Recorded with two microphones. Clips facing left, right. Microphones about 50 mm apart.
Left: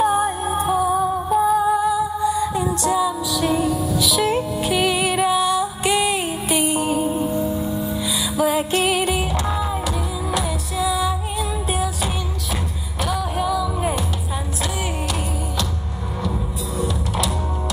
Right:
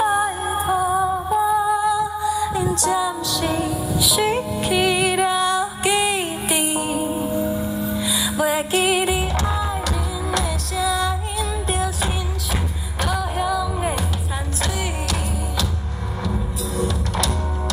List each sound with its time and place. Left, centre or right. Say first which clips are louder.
0.0 s music: left 1 dB; centre
1.4 s music: left 1 dB; centre
2.4 s music: even; centre
16.2 s music: even; centre